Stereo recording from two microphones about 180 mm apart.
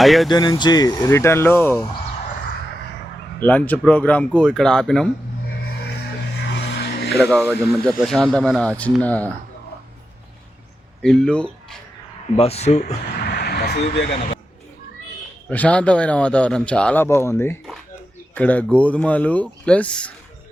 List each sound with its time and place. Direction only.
0.0 s speech: centre (ahead or behind)
0.3 s speech: 20° left (ahead or behind)
3.4 s a man's voice: 10° left (ahead or behind)
5.8 s vehicle: 65° left (ahead or behind)
7.2 s a man's voice: 5° left (ahead or behind)
11.0 s speech: 5° left (ahead or behind)
12.4 s speech: 35° left (ahead or behind)
13.1 s a sound: 60° left (ahead or behind)
15.4 s a man's voice: 10° left (ahead or behind)